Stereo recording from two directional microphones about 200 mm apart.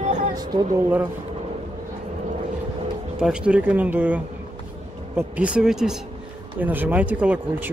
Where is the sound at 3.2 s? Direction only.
5° right (ahead or behind).